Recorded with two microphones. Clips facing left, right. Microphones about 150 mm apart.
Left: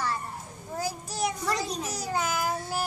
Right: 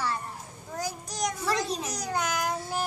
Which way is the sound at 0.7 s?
10° left (ahead or behind).